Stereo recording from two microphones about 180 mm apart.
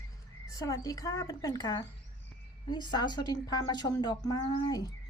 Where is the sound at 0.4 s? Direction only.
20° left (ahead or behind).